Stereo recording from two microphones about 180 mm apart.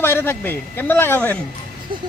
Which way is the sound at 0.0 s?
15° left (ahead or behind).